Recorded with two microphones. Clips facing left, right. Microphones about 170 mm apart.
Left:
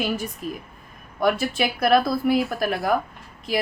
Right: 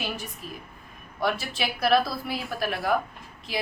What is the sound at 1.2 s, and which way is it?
A woman's voice, 50° left (ahead or behind).